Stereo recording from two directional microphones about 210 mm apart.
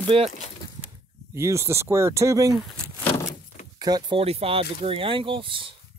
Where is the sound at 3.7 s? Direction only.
20° right (ahead or behind).